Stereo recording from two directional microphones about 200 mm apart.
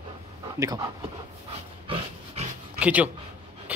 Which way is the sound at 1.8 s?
30° right (ahead or behind).